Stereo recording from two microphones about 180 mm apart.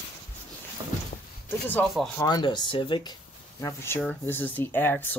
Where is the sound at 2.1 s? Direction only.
20° left (ahead or behind).